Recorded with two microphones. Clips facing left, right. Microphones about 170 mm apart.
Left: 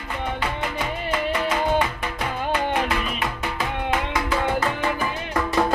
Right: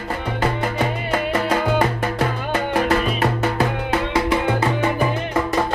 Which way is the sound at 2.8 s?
45° right (ahead or behind).